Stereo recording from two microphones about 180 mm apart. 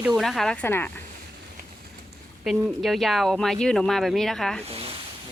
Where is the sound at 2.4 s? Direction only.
Centre (ahead or behind).